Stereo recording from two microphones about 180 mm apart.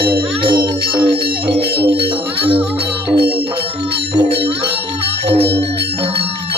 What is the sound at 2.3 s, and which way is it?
Music, 30° right (ahead or behind).